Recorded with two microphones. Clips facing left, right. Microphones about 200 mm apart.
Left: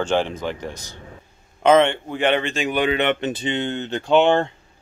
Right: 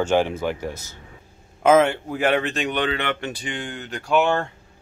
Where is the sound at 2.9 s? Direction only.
20° left (ahead or behind).